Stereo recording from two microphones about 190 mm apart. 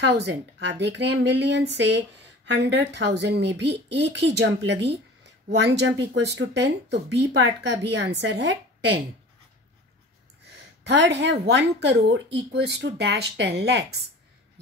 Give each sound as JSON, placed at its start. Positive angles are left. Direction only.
{"t": 0.0, "sound": "speech", "side_deg": -65}
{"t": 11.0, "sound": "speech", "side_deg": -65}